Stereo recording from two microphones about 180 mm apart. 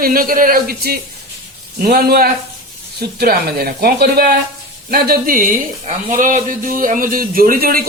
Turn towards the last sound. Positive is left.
turn(degrees=-55)  # may be behind; listen again after turning